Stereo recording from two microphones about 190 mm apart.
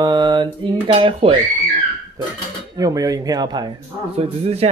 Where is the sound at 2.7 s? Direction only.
20° right (ahead or behind).